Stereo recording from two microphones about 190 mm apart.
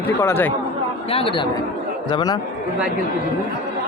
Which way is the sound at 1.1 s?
25° left (ahead or behind).